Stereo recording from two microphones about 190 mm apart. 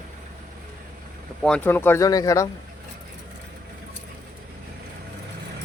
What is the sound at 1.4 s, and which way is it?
Speech, 10° left (ahead or behind).